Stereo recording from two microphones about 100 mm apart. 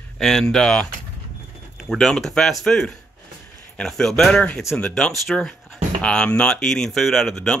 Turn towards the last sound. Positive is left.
turn(degrees=5)  # may be behind; listen again after turning